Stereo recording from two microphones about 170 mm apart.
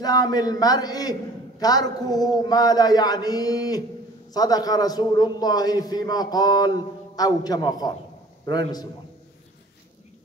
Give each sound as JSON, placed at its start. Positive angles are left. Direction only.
{"t": 0.0, "sound": "a man's voice", "side_deg": 25}